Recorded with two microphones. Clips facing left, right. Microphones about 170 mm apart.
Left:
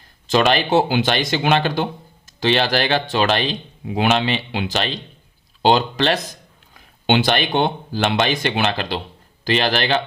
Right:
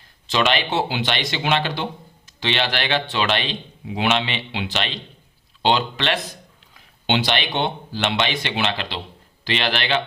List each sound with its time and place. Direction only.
0.3 s speech: 45° left (ahead or behind)
6.7 s speech: 50° left (ahead or behind)